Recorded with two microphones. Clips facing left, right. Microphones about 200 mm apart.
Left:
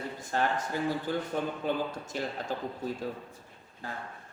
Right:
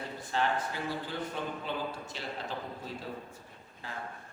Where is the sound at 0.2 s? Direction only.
45° left (ahead or behind).